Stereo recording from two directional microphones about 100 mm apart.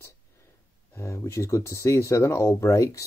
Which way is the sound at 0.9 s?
25° left (ahead or behind).